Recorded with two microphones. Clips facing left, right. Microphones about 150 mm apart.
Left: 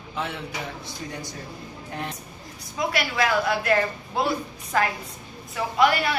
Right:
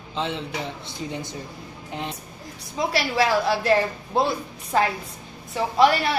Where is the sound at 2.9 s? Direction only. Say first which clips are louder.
Right 3 dB; 30° right (ahead or behind).